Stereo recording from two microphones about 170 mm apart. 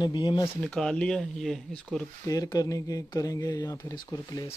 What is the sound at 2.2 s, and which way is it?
Speech, 20° left (ahead or behind).